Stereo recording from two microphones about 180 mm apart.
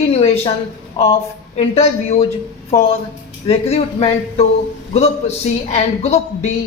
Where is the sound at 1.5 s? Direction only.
35° left (ahead or behind).